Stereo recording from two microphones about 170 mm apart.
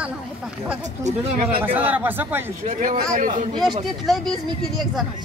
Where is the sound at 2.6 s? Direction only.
50° right (ahead or behind).